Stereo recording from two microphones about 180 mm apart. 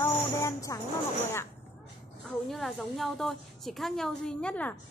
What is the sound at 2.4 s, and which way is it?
A woman's voice, centre (ahead or behind).